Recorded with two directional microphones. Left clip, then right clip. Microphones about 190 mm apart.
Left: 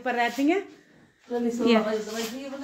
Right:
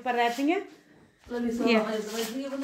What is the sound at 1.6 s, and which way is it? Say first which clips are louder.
Speech: left 2 dB; 25° left (ahead or behind).